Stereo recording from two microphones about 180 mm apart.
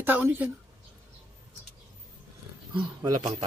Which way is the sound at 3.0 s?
20° right (ahead or behind).